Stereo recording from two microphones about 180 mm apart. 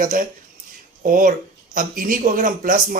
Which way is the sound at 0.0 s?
50° right (ahead or behind).